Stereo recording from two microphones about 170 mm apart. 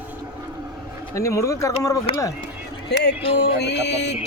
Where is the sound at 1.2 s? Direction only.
20° left (ahead or behind).